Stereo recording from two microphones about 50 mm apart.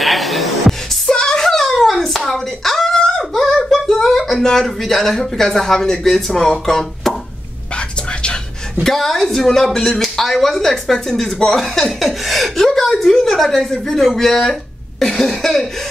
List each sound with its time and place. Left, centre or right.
0.0 s music: centre
1.1 s hands: centre
4.4 s speech: centre
7.7 s whispering: left
8.8 s speech: centre